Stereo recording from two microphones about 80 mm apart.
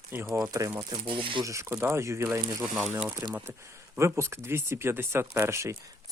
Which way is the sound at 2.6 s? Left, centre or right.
Right.